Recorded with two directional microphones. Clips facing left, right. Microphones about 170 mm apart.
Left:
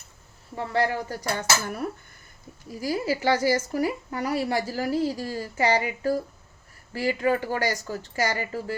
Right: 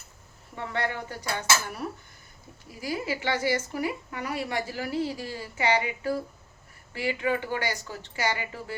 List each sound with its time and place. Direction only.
0.5 s a woman's voice: 35° left (ahead or behind)
1.4 s dishes: 50° left (ahead or behind)
2.8 s a woman's voice: 40° left (ahead or behind)